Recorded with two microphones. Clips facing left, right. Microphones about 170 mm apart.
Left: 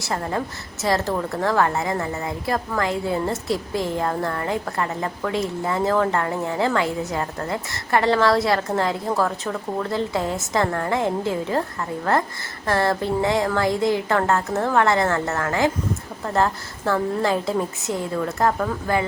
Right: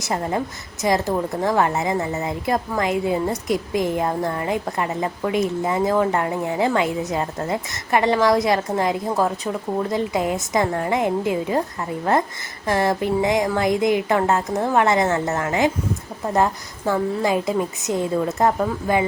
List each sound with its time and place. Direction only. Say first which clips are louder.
0.0 s a woman's voice: right 2 dB; 15° right (ahead or behind)